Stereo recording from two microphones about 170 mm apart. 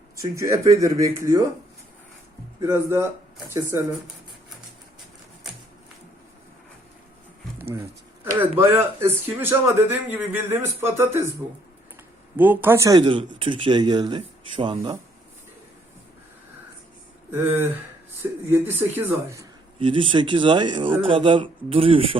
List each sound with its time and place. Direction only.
0.2 s speech: 20° right (ahead or behind)
2.6 s speech: 15° right (ahead or behind)
7.6 s a sound: 15° right (ahead or behind)
8.4 s speech: 15° right (ahead or behind)
12.4 s speech: 10° right (ahead or behind)
13.0 s speech: 30° right (ahead or behind)
18.2 s speech: 10° right (ahead or behind)
19.8 s speech: 30° right (ahead or behind)